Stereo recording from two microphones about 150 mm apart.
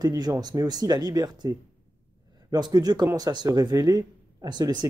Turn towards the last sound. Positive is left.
turn(degrees=-30)  # may be behind; listen again after turning